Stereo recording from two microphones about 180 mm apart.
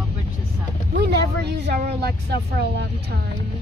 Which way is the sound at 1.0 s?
70° right (ahead or behind).